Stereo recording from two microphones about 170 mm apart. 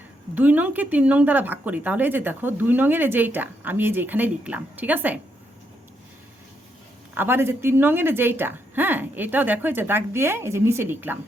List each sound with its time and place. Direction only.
0.3 s speech: 10° right (ahead or behind)
7.1 s speech: 10° right (ahead or behind)